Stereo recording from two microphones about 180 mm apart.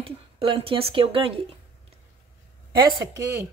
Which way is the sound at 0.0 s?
30° right (ahead or behind).